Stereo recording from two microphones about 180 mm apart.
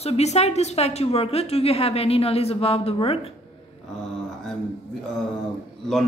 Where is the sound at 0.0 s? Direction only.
35° left (ahead or behind).